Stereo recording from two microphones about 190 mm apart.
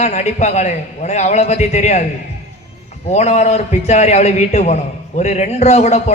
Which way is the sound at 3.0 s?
35° left (ahead or behind).